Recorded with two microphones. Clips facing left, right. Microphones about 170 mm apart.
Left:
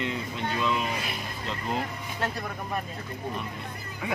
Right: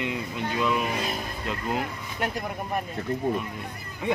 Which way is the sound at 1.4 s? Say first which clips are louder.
Right 1 dB; 10° right (ahead or behind).